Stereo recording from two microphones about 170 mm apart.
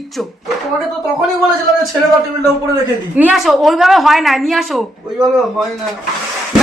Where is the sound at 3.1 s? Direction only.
5° right (ahead or behind).